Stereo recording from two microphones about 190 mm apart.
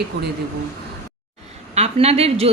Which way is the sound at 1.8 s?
30° right (ahead or behind).